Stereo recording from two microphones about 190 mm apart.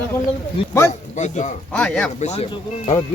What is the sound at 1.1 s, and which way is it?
Speech, 40° left (ahead or behind).